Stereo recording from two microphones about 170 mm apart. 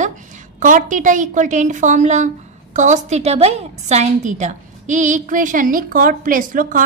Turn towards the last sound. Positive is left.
turn(degrees=-50)  # may be behind; listen again after turning